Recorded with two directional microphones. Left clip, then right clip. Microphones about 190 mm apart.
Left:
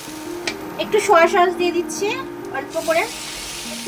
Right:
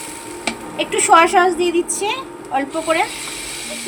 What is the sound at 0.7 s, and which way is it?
A woman's voice, 50° right (ahead or behind).